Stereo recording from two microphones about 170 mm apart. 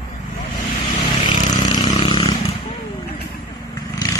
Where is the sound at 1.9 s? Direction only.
30° left (ahead or behind).